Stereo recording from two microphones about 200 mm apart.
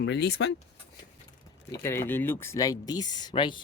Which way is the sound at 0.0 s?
60° left (ahead or behind).